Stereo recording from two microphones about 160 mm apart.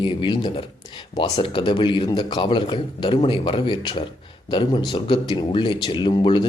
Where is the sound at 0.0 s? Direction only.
30° left (ahead or behind).